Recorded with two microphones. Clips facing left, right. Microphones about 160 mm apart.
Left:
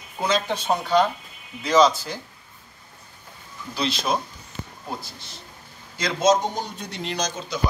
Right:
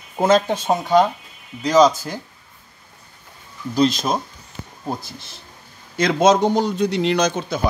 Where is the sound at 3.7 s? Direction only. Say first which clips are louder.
Right 7 dB; 45° right (ahead or behind).